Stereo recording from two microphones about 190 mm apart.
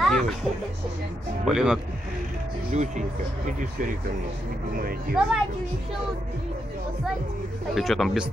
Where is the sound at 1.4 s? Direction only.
5° right (ahead or behind).